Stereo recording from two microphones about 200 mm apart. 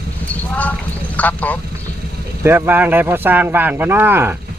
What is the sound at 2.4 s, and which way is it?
Speech, 10° right (ahead or behind).